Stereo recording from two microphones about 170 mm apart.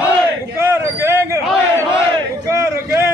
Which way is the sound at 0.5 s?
15° right (ahead or behind).